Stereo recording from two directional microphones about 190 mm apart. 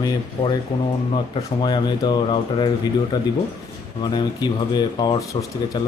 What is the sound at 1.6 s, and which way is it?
Speech, 25° left (ahead or behind).